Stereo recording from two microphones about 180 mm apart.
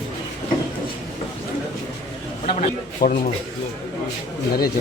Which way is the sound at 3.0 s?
50° left (ahead or behind).